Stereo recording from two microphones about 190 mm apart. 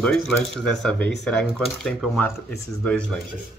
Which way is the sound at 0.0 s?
5° left (ahead or behind).